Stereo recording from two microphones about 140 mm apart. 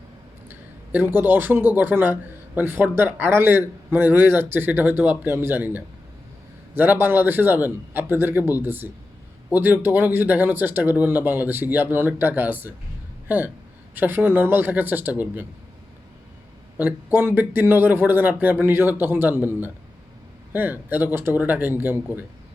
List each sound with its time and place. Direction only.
0.9 s speech: 15° right (ahead or behind)
16.7 s speech: 15° right (ahead or behind)
20.5 s speech: 15° right (ahead or behind)